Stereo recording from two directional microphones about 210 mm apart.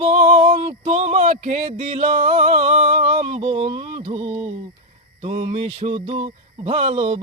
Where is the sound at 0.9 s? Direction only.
30° right (ahead or behind).